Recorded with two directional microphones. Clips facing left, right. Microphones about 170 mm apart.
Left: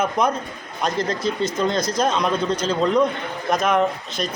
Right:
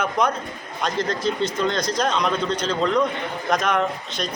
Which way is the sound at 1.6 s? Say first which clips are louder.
Left 3 dB; 5° left (ahead or behind).